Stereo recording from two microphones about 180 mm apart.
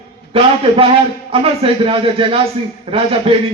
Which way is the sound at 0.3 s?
30° right (ahead or behind).